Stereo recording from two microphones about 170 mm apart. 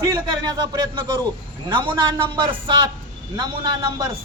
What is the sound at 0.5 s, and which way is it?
Speech, 25° right (ahead or behind).